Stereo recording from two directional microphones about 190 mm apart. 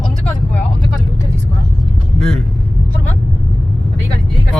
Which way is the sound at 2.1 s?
Centre (ahead or behind).